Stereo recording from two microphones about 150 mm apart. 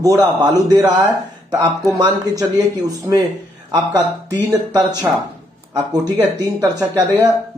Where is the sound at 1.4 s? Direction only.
25° right (ahead or behind).